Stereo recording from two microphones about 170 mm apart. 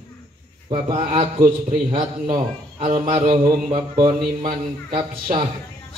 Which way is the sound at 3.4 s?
25° right (ahead or behind).